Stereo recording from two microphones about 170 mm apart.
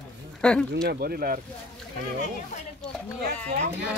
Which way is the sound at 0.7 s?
70° right (ahead or behind).